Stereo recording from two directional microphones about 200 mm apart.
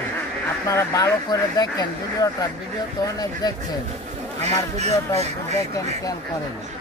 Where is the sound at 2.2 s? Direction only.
20° left (ahead or behind).